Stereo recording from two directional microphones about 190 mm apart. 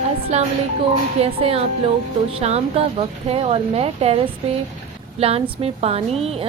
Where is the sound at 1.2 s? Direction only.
30° right (ahead or behind).